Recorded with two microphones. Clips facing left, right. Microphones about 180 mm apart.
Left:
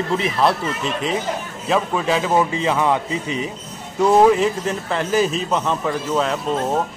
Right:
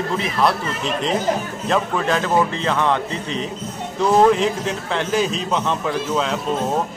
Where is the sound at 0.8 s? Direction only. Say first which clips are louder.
Right 4 dB; centre (ahead or behind).